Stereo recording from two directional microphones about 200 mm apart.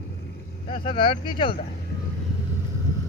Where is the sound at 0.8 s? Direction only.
25° left (ahead or behind).